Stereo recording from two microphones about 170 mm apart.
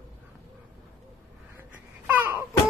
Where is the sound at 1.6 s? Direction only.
10° right (ahead or behind).